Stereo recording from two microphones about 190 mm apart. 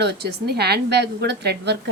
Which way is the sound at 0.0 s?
60° right (ahead or behind).